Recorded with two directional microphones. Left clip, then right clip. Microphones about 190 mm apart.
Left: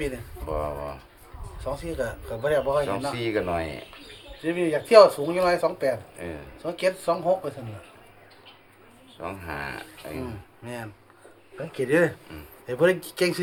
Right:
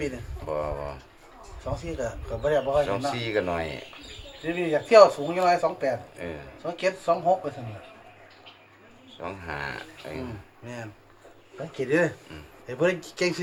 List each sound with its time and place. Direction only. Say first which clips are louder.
0.4 s speech: even; 5° left (ahead or behind)
1.6 s speech: left 2 dB; 50° left (ahead or behind)
2.8 s speech: even; 5° left (ahead or behind)
4.4 s speech: left 1 dB; 50° left (ahead or behind)
6.1 s speech: even; 5° left (ahead or behind)
6.6 s speech: left 2 dB; 50° left (ahead or behind)
9.2 s speech: even; 5° left (ahead or behind)
10.7 s speech: left 2 dB; 45° left (ahead or behind)